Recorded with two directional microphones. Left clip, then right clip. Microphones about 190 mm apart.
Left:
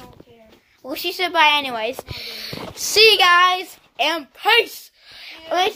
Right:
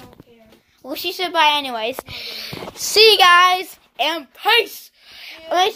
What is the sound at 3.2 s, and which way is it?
Child singing, 20° right (ahead or behind).